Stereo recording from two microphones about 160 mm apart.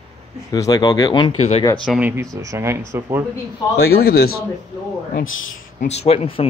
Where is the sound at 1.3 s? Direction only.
45° left (ahead or behind).